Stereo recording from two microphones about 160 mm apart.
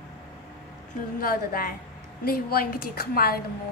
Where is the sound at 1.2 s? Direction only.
65° left (ahead or behind).